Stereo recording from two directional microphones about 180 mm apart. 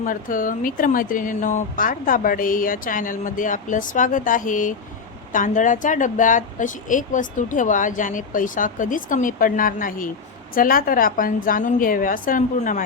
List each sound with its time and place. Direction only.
0.0 s a woman's voice: 50° left (ahead or behind)